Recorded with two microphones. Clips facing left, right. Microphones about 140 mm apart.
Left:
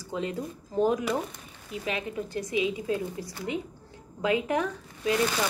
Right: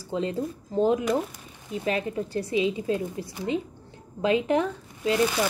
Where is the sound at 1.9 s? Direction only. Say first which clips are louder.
Right 5 dB; 35° right (ahead or behind).